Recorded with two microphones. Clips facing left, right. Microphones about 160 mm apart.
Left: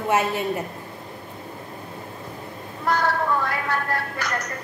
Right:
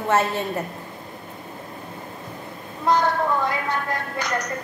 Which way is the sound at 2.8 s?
20° right (ahead or behind).